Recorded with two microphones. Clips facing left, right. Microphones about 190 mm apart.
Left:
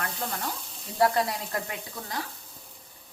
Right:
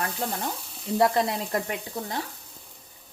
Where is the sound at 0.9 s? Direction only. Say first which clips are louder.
Right 2 dB; 20° right (ahead or behind).